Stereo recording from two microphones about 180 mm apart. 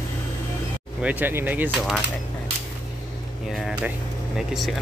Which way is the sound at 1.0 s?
10° right (ahead or behind).